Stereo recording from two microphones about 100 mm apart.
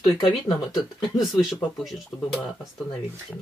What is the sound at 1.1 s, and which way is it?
Speech, 5° right (ahead or behind).